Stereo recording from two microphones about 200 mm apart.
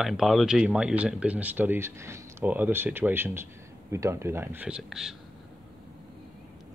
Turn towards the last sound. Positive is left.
turn(degrees=0)  # may be behind; listen again after turning